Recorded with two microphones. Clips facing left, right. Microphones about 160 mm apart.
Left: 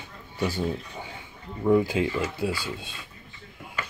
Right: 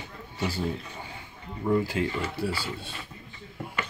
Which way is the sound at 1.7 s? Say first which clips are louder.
Left 4 dB; 20° left (ahead or behind).